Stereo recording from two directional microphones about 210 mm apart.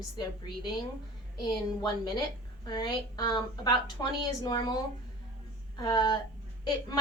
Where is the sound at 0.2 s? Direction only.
20° left (ahead or behind).